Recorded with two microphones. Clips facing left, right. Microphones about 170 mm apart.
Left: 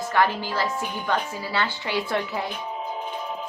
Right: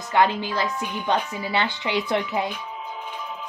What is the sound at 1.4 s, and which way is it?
Speech, 20° right (ahead or behind).